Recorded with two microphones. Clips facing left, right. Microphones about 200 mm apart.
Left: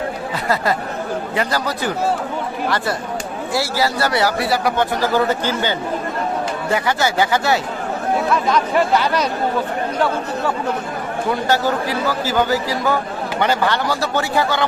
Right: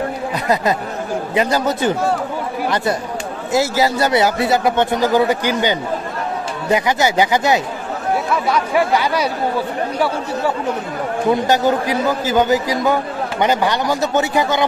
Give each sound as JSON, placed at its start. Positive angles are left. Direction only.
{"t": 1.3, "sound": "a man's voice", "side_deg": -20}
{"t": 3.5, "sound": "a man's voice", "side_deg": -20}
{"t": 11.2, "sound": "a man's voice", "side_deg": -20}